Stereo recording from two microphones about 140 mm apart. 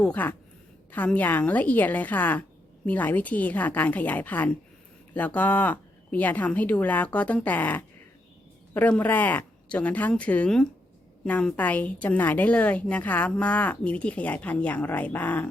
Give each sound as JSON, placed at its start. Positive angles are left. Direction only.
{"t": 0.0, "sound": "a woman's voice", "side_deg": 10}